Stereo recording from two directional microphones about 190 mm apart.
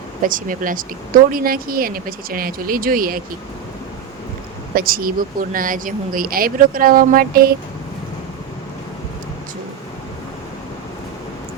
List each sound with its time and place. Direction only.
0.2 s speech: 45° right (ahead or behind)
4.7 s speech: 50° right (ahead or behind)